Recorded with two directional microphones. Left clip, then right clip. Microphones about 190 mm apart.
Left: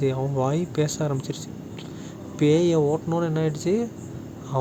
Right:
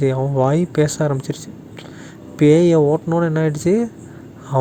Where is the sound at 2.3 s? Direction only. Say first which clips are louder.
Right 7 dB; 35° right (ahead or behind).